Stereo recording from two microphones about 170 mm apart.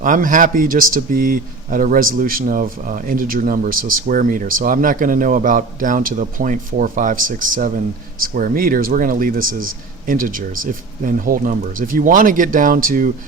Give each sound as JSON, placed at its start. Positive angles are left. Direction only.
{"t": 0.0, "sound": "speech", "side_deg": -50}